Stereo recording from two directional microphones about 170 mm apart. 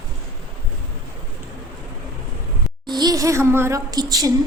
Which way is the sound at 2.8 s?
25° right (ahead or behind).